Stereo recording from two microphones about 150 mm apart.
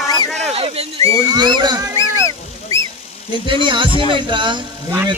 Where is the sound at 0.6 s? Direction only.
40° right (ahead or behind).